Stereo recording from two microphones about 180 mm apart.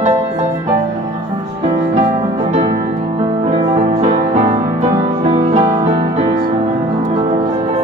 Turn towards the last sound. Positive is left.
turn(degrees=-35)  # may be behind; listen again after turning